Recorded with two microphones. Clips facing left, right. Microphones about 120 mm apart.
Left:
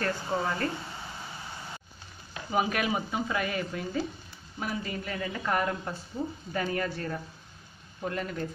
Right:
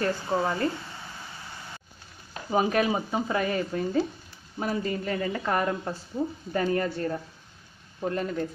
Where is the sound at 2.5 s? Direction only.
30° right (ahead or behind).